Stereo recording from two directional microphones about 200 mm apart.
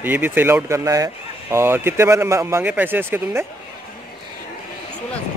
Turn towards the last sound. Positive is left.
turn(degrees=-10)  # may be behind; listen again after turning